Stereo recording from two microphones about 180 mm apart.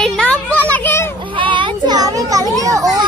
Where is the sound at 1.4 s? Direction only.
25° right (ahead or behind).